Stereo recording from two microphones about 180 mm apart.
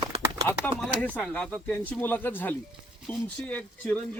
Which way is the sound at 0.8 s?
5° left (ahead or behind).